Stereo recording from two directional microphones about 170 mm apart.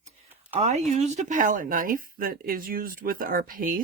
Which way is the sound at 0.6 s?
40° right (ahead or behind).